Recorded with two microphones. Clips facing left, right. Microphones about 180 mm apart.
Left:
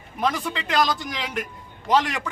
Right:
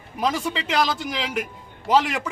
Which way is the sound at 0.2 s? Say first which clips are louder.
Right 1 dB; 5° right (ahead or behind).